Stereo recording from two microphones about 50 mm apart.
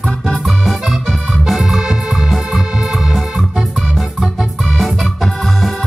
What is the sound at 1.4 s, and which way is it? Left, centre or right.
Music, centre.